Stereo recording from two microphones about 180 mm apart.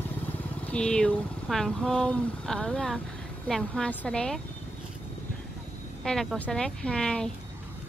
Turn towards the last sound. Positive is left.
turn(degrees=5)  # may be behind; listen again after turning